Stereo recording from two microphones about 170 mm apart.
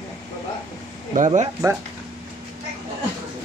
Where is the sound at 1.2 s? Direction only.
45° right (ahead or behind).